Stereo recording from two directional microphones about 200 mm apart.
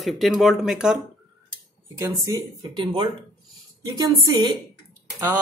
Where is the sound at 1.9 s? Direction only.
15° right (ahead or behind).